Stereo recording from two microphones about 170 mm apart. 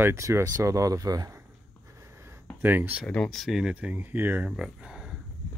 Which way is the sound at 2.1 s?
15° right (ahead or behind).